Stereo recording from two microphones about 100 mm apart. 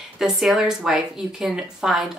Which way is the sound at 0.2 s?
Centre (ahead or behind).